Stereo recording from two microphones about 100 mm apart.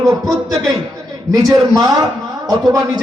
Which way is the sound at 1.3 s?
40° right (ahead or behind).